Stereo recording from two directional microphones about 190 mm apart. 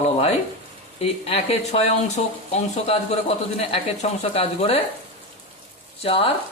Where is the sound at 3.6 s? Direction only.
30° left (ahead or behind).